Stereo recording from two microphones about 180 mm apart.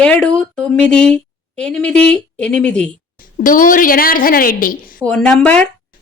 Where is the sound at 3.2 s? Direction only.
50° left (ahead or behind).